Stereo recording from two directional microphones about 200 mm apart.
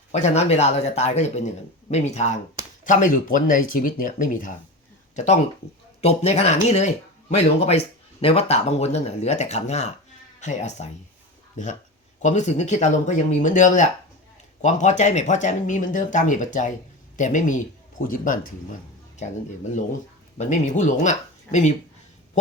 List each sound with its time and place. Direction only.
0.1 s speech: 35° left (ahead or behind)
20.4 s speech: 35° left (ahead or behind)